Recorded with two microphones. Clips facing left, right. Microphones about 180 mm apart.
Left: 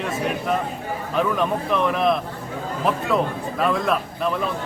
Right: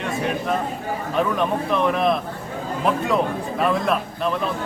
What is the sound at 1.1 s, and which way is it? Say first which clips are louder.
A man's voice: even; centre (ahead or behind).